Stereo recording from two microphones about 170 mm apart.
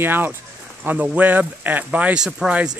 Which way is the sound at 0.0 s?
10° right (ahead or behind).